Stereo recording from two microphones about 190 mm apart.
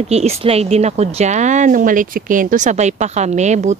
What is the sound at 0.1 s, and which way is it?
Speech, 35° right (ahead or behind).